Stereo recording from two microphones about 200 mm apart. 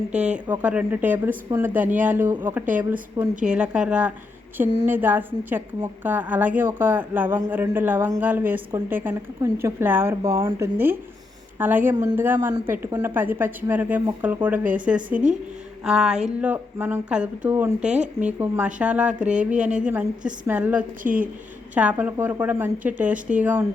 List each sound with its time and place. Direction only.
0.1 s a woman's voice: 5° right (ahead or behind)
15.8 s a sound: 5° right (ahead or behind)
16.4 s a woman's voice: 10° right (ahead or behind)
21.0 s speech: 40° right (ahead or behind)
21.8 s a woman's voice: 10° right (ahead or behind)